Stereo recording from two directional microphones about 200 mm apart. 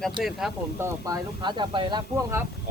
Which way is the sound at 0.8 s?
20° right (ahead or behind).